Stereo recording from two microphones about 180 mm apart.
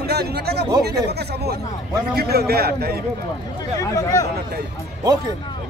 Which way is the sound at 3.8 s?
15° left (ahead or behind).